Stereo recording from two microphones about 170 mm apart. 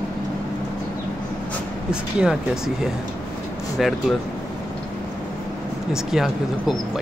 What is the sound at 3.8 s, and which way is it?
Speech, centre (ahead or behind).